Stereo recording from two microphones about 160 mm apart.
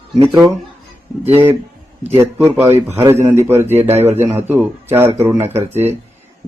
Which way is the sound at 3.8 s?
40° right (ahead or behind).